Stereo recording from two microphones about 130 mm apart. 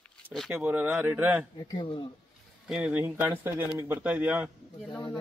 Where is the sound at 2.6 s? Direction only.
5° right (ahead or behind).